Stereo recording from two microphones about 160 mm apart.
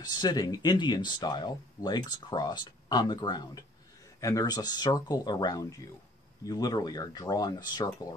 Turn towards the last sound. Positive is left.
turn(degrees=25)  # may be behind; listen again after turning